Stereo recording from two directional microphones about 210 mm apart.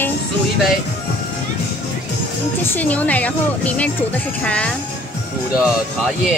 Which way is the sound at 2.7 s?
5° left (ahead or behind).